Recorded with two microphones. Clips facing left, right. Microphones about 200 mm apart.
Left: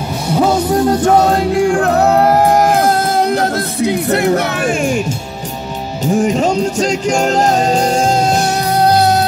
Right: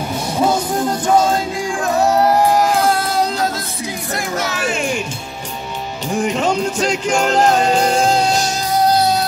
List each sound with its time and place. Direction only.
1.1 s music: 65° left (ahead or behind)
4.4 s speech: 50° left (ahead or behind)
6.1 s music: 40° left (ahead or behind)
8.4 s music: 65° left (ahead or behind)